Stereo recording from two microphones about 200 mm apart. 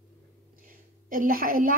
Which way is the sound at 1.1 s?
45° right (ahead or behind).